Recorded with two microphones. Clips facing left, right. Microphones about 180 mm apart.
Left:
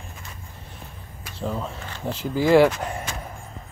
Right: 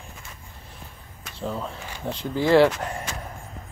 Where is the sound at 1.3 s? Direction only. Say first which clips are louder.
Left 1 dB; centre (ahead or behind).